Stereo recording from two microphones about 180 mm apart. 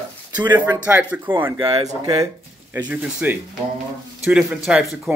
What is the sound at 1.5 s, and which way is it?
Speech, 30° right (ahead or behind).